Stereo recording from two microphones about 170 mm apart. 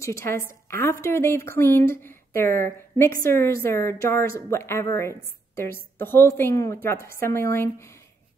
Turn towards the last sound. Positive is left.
turn(degrees=15)  # may be behind; listen again after turning